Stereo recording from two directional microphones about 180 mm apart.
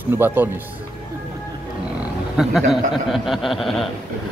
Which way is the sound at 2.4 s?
Centre (ahead or behind).